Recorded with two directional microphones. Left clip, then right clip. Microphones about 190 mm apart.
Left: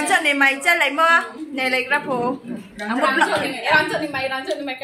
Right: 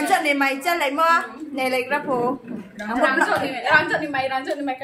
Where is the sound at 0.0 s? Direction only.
Centre (ahead or behind).